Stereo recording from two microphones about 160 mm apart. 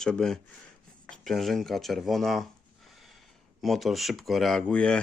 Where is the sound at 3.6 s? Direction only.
Centre (ahead or behind).